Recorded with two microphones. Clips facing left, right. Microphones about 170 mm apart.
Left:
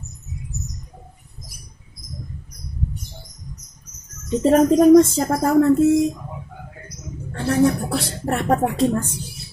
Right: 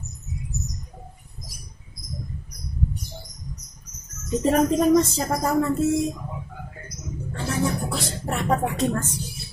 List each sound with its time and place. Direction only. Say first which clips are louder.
4.4 s speech: left 5 dB; 40° left (ahead or behind)
4.9 s speech: left 7 dB; 50° left (ahead or behind)
7.3 s a woman's voice: left 8 dB; 60° left (ahead or behind)
8.6 s speech: left 5 dB; 30° left (ahead or behind)